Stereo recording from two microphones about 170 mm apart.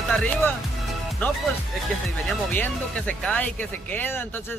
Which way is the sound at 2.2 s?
10° left (ahead or behind).